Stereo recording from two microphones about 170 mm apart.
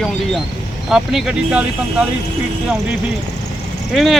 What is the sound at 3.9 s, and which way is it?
Speech, centre (ahead or behind).